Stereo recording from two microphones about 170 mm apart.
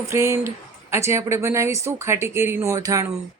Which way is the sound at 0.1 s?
15° right (ahead or behind).